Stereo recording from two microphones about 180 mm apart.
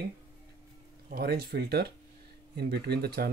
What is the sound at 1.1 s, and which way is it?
Speech, 60° right (ahead or behind).